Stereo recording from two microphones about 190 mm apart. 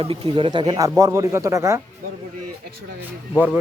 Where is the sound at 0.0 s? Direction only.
30° right (ahead or behind).